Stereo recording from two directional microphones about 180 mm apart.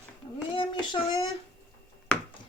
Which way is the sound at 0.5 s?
25° left (ahead or behind).